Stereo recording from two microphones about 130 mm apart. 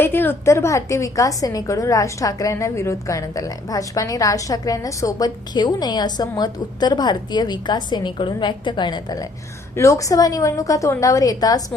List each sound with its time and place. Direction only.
0.0 s a woman's voice: 15° left (ahead or behind); by 9.2 s 35° left (ahead or behind)
9.7 s a woman's voice: 25° left (ahead or behind)